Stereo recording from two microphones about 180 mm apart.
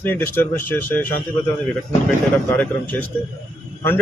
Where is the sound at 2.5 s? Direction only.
10° left (ahead or behind).